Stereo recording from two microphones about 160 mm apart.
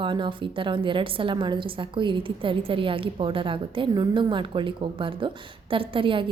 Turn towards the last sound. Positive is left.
turn(degrees=-30)  # may be behind; listen again after turning